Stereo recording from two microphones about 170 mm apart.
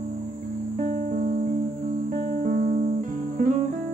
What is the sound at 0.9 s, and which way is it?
Music, 50° right (ahead or behind).